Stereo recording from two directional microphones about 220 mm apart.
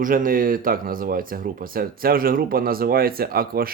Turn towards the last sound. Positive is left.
turn(degrees=-40)  # may be behind; listen again after turning